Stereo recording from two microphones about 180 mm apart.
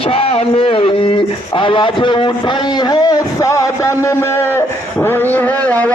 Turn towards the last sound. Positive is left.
turn(degrees=10)  # may be behind; listen again after turning